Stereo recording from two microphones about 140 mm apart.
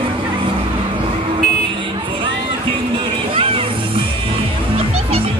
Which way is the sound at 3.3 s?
40° right (ahead or behind).